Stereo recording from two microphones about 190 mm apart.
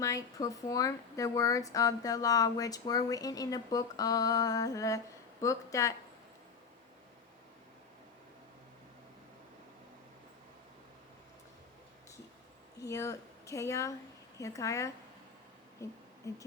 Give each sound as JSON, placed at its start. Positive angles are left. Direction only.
{"t": 0.0, "sound": "speech", "side_deg": 15}
{"t": 12.8, "sound": "speech", "side_deg": 15}
{"t": 16.2, "sound": "speech", "side_deg": 15}